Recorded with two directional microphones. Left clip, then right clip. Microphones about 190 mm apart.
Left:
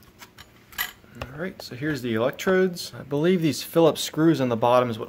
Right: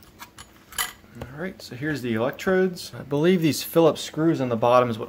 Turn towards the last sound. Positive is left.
turn(degrees=5)  # may be behind; listen again after turning